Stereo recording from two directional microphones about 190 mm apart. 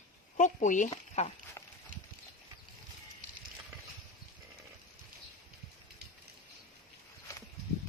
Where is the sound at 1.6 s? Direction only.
15° left (ahead or behind).